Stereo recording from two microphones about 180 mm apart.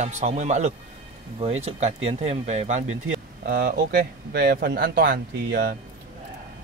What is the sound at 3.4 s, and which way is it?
A man's voice, 60° right (ahead or behind).